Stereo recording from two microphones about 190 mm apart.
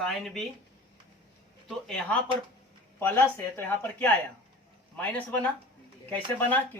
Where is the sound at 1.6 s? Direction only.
5° left (ahead or behind).